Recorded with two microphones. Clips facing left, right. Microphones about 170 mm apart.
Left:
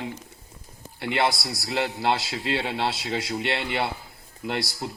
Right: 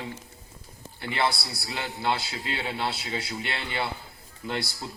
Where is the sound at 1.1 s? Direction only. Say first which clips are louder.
Left 3 dB; 85° left.